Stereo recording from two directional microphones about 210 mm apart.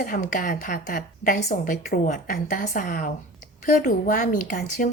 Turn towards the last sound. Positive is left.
turn(degrees=40)  # may be behind; listen again after turning